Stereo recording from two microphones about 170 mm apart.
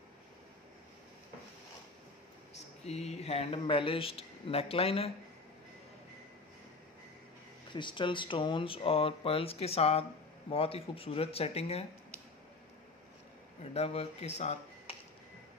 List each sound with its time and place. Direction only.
2.8 s speech: 40° left (ahead or behind)
7.7 s speech: 30° left (ahead or behind)
13.7 s speech: 35° left (ahead or behind)